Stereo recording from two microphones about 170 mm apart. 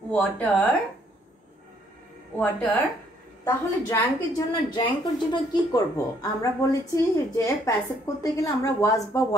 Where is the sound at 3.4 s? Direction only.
15° left (ahead or behind).